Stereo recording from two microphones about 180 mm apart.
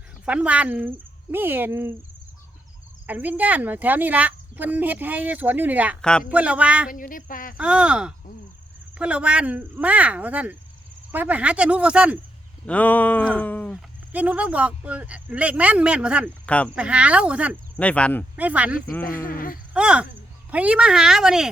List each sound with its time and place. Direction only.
0.3 s speech: 5° right (ahead or behind)
3.1 s speech: 10° right (ahead or behind)
6.0 s speech: 5° left (ahead or behind)
6.2 s speech: 10° right (ahead or behind)
6.9 s speech: 50° left (ahead or behind)
7.5 s speech: 5° right (ahead or behind)
12.6 s a sound: 10° left (ahead or behind)
14.1 s speech: 10° right (ahead or behind)
17.7 s a sound: 5° left (ahead or behind)
18.3 s speech: 10° right (ahead or behind)
19.0 s speech: 50° left (ahead or behind)
19.7 s speech: 5° right (ahead or behind)